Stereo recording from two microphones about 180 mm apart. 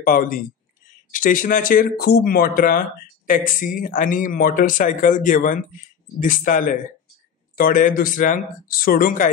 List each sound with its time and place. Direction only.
0.0 s speech: 50° left (ahead or behind)